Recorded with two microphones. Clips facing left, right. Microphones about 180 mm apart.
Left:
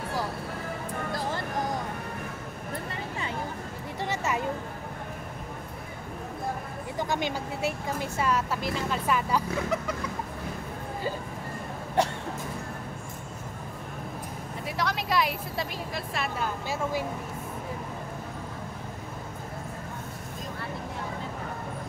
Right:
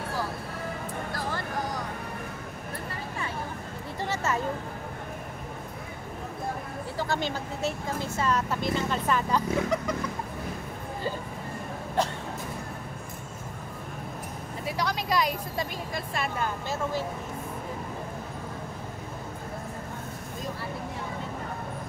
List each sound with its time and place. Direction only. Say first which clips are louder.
4.1 s a sound: right 1 dB; 15° left (ahead or behind)
7.0 s speech: left 1 dB; 15° left (ahead or behind)
14.8 s a woman's voice: even; centre (ahead or behind)